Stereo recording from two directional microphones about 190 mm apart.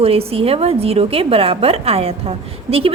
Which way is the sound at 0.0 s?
30° right (ahead or behind).